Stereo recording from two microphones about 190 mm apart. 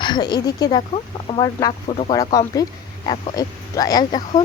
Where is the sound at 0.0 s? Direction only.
25° left (ahead or behind).